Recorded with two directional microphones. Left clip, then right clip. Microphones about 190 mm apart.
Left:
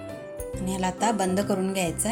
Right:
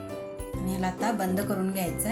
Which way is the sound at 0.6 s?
40° left (ahead or behind).